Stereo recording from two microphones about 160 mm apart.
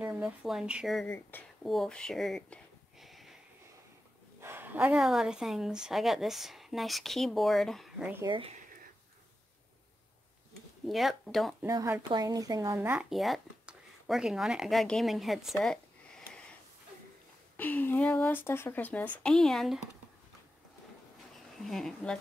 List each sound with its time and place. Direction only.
0.0 s speech: 5° right (ahead or behind)
4.4 s a woman's voice: 15° right (ahead or behind)
8.3 s speech: 35° right (ahead or behind)
10.9 s a woman's voice: centre (ahead or behind)
11.6 s speech: 20° right (ahead or behind)
13.1 s speech: centre (ahead or behind)
15.6 s a sound: 5° left (ahead or behind)
17.6 s a woman's voice: 10° left (ahead or behind)
21.5 s a woman's voice: centre (ahead or behind)